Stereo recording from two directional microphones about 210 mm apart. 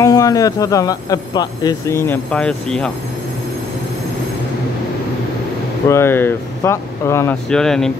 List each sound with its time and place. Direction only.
0.0 s speech: 15° left (ahead or behind)
5.9 s speech: 10° left (ahead or behind)